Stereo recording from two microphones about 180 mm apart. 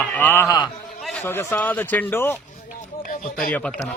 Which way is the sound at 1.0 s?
Centre (ahead or behind).